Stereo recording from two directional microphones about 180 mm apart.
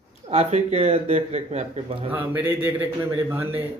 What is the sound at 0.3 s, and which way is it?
A man's voice, 35° right (ahead or behind).